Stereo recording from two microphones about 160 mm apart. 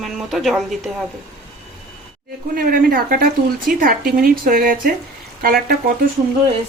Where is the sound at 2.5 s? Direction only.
65° right (ahead or behind).